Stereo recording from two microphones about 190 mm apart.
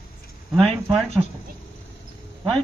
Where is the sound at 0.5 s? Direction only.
Centre (ahead or behind).